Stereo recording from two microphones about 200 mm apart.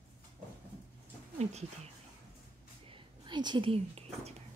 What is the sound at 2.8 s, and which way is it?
Whispering, 25° right (ahead or behind).